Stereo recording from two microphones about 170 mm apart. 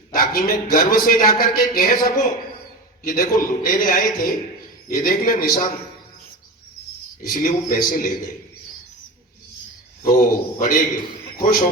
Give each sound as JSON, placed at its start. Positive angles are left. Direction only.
{"t": 0.1, "sound": "a man's voice", "side_deg": 55}
{"t": 7.2, "sound": "a man's voice", "side_deg": 55}
{"t": 10.0, "sound": "a man's voice", "side_deg": 55}